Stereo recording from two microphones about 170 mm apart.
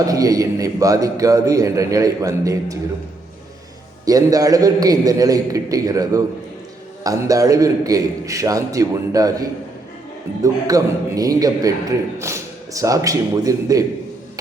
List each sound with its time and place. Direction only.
0.0 s a man's voice: 20° right (ahead or behind)
4.0 s a man's voice: 20° right (ahead or behind)